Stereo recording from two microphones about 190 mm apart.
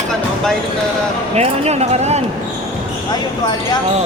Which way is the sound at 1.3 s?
35° right (ahead or behind).